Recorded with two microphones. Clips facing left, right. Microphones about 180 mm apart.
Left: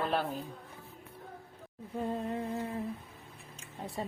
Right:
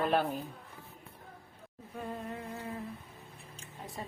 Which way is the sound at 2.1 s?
25° left (ahead or behind).